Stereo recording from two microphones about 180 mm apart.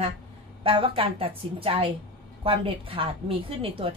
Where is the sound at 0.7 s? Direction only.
30° right (ahead or behind).